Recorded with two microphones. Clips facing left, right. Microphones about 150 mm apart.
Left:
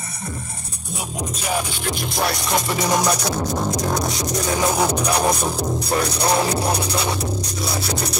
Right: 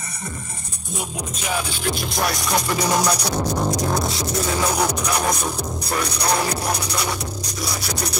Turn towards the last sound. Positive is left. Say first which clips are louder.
# left 3 dB
turn(degrees=30)  # may be behind; listen again after turning